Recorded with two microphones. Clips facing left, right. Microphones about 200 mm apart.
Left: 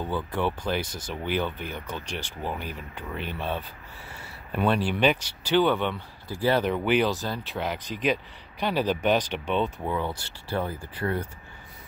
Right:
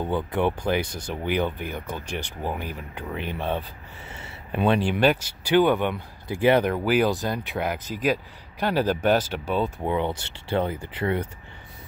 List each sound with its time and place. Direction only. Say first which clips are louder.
0.0 s speech: right 4 dB; 20° right (ahead or behind)
0.8 s speech: right 3 dB; 60° right (ahead or behind)
1.1 s speech: right 3 dB; 15° right (ahead or behind)
2.0 s speech: right 3 dB; 60° right (ahead or behind)
2.4 s speech: right 1 dB; 15° right (ahead or behind)
6.7 s speech: right 2 dB; 5° right (ahead or behind)
9.8 s speech: right 4 dB; 20° right (ahead or behind)